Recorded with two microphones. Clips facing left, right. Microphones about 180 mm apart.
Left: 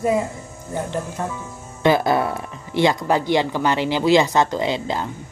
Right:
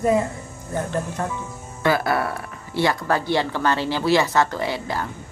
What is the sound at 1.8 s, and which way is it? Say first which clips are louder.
Speech: left 4 dB; 20° left (ahead or behind).